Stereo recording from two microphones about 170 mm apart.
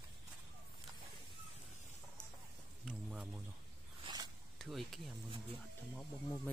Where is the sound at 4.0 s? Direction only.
25° right (ahead or behind).